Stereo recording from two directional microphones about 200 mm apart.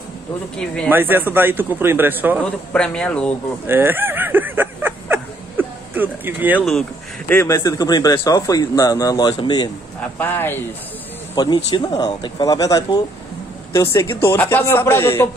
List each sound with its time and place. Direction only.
0.8 s a man's voice: 10° right (ahead or behind)
2.4 s a man's voice: 5° left (ahead or behind)
3.6 s a sound: 10° right (ahead or behind)
6.5 s a man's voice: centre (ahead or behind)
7.2 s speech: 15° left (ahead or behind)
10.1 s a man's voice: 10° left (ahead or behind)
11.3 s a man's voice: 20° left (ahead or behind)